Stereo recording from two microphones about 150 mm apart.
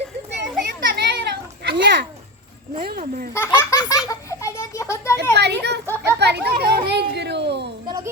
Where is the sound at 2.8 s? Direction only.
80° right.